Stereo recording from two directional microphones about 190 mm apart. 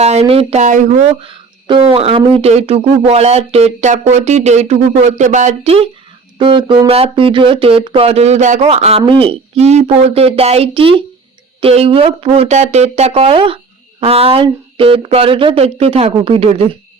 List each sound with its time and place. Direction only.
0.0 s speech: 35° right (ahead or behind)